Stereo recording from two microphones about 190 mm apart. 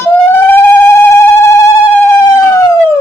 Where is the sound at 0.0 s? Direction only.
10° left (ahead or behind).